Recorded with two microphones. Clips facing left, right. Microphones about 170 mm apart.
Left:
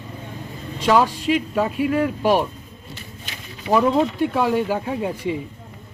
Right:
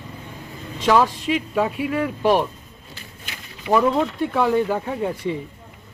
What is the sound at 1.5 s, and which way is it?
Speech, 5° left (ahead or behind).